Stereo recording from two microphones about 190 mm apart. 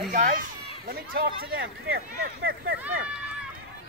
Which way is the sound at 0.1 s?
40° right (ahead or behind).